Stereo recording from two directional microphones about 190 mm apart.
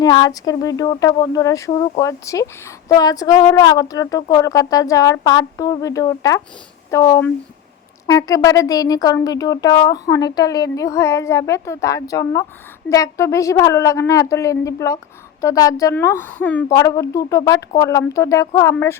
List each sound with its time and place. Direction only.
0.0 s speech: 20° left (ahead or behind)